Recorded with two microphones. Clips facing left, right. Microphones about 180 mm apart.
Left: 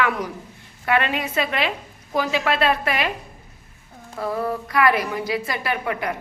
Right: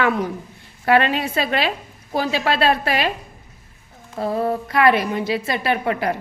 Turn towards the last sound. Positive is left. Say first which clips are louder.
# right 4 dB
turn(degrees=-30)  # may be behind; listen again after turning